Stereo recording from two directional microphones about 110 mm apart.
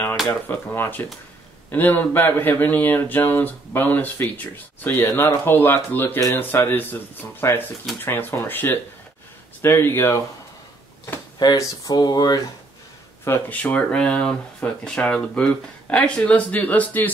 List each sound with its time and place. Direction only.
0.3 s speech: 15° left (ahead or behind)
11.3 s speech: 40° left (ahead or behind)
13.2 s speech: 15° left (ahead or behind)